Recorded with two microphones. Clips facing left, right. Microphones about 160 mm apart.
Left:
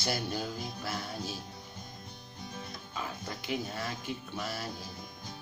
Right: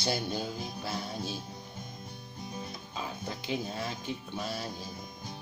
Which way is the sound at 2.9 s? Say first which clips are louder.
Right 1 dB; 25° right (ahead or behind).